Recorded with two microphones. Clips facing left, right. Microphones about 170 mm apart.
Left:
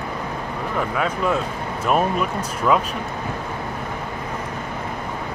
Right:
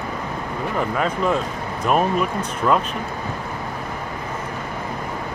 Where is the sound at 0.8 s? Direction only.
Centre (ahead or behind).